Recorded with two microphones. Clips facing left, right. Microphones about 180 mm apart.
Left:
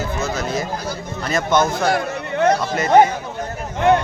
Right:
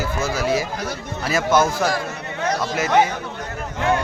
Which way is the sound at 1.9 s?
60° left (ahead or behind).